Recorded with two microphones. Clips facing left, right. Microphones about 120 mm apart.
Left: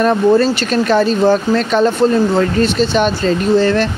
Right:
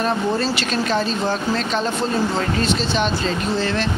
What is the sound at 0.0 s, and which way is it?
Speech, 50° left (ahead or behind).